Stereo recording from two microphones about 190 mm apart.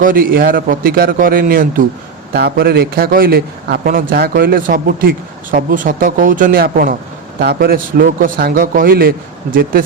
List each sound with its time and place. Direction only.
0.0 s a man's voice: 50° right (ahead or behind)